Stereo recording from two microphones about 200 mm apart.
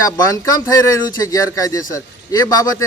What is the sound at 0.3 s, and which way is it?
A man's voice, 15° left (ahead or behind).